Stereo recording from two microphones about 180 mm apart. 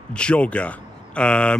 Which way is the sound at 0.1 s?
5° left (ahead or behind).